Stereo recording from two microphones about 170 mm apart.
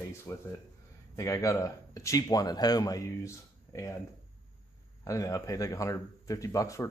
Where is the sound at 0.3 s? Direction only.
15° left (ahead or behind).